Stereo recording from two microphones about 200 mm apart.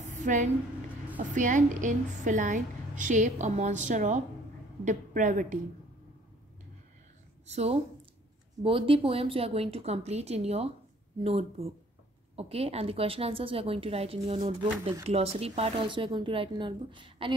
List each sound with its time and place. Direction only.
0.2 s a woman's voice: 40° right (ahead or behind)
7.4 s a woman's voice: 30° right (ahead or behind)